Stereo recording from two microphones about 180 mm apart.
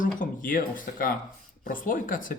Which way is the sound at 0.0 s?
50° left (ahead or behind).